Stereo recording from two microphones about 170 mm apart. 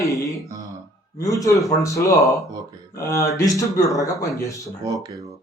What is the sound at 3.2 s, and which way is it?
Speech, 20° left (ahead or behind).